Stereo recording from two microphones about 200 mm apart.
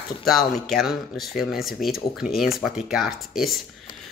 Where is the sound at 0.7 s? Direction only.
Centre (ahead or behind).